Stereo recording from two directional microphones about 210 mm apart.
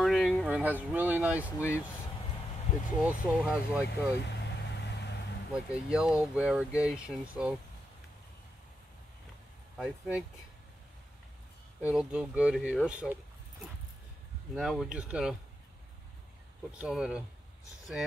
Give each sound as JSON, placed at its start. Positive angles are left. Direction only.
{"t": 0.0, "sound": "a sound", "side_deg": 0}
{"t": 3.0, "sound": "speech", "side_deg": -5}
{"t": 4.3, "sound": "vehicle", "side_deg": 55}
{"t": 5.5, "sound": "speech", "side_deg": -5}
{"t": 9.8, "sound": "speech", "side_deg": -5}
{"t": 11.8, "sound": "speech", "side_deg": -5}
{"t": 14.5, "sound": "speech", "side_deg": 0}
{"t": 16.7, "sound": "speech", "side_deg": -5}